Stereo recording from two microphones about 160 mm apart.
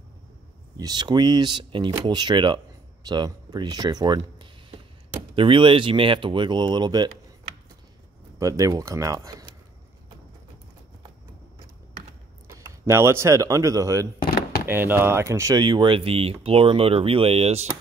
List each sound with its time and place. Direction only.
0.7 s speech: 25° right (ahead or behind)
8.4 s speech: 20° right (ahead or behind)
12.5 s speech: 15° right (ahead or behind)
14.2 s a sound: 80° left
14.7 s speech: 15° right (ahead or behind); by 17.6 s 40° right (ahead or behind)